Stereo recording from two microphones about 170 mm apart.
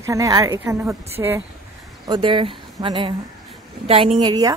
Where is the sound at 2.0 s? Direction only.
30° right (ahead or behind).